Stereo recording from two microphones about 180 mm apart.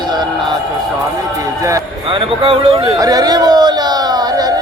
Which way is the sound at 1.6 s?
20° right (ahead or behind).